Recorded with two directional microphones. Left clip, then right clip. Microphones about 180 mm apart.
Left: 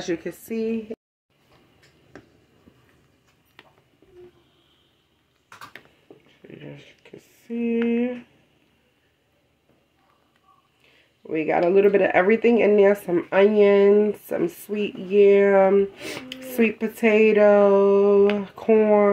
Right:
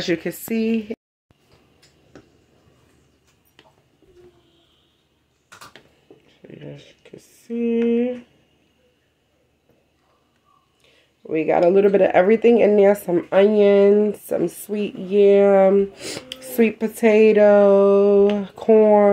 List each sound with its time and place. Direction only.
0.0 s speech: 45° right (ahead or behind)
6.2 s a sound: 5° right (ahead or behind)
10.8 s speech: 5° right (ahead or behind)